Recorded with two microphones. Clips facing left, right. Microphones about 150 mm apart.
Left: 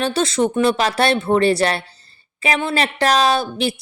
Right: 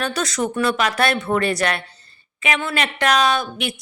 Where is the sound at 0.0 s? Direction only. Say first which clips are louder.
Left 5 dB; 30° left (ahead or behind).